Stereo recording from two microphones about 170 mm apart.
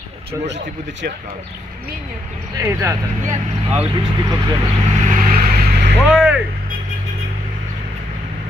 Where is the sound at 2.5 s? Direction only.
15° right (ahead or behind).